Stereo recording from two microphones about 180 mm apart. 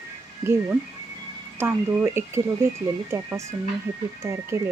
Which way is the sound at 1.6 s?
15° right (ahead or behind).